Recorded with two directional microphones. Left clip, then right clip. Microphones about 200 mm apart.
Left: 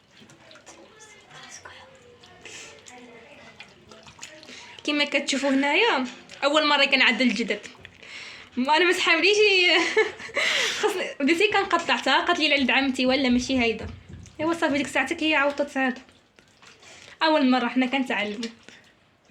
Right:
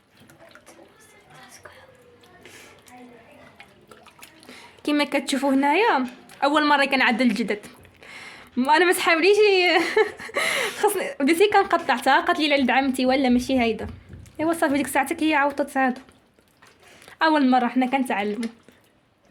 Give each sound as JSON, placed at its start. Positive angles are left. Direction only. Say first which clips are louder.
{"t": 4.4, "sound": "a woman's voice", "louder": "right 2 dB", "side_deg": -65}
{"t": 17.1, "sound": "speech", "louder": "right 2 dB", "side_deg": -65}